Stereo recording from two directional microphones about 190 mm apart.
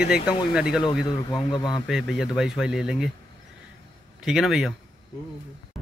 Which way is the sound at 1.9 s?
Centre (ahead or behind).